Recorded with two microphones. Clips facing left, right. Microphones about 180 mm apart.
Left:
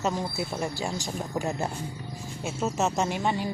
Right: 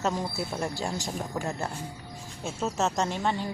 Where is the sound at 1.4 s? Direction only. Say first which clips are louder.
Left 6 dB; 15° left (ahead or behind).